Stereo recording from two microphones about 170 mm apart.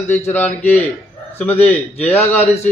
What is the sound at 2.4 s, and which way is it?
Speech, 40° left (ahead or behind).